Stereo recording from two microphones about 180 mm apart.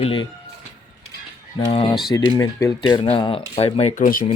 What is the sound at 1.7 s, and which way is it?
Speech, 30° left (ahead or behind).